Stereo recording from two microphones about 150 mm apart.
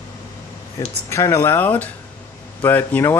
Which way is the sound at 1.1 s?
20° left (ahead or behind).